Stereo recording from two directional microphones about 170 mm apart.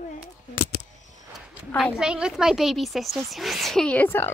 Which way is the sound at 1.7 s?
10° left (ahead or behind).